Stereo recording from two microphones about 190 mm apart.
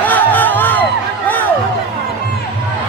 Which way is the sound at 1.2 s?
10° left (ahead or behind).